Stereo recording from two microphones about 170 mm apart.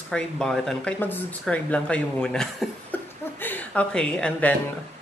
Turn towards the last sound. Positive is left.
turn(degrees=5)  # may be behind; listen again after turning